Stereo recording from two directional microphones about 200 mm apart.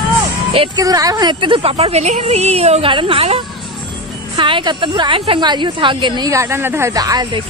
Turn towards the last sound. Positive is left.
turn(degrees=-20)  # may be behind; listen again after turning